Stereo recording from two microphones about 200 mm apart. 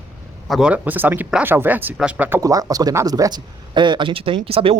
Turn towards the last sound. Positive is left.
turn(degrees=-25)  # may be behind; listen again after turning